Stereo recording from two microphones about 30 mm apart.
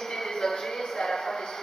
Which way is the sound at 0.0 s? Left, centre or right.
Centre.